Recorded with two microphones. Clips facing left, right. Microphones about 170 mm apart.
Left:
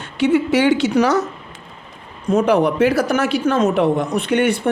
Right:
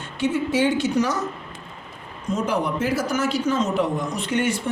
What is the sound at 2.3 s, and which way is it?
Speech, 65° left (ahead or behind).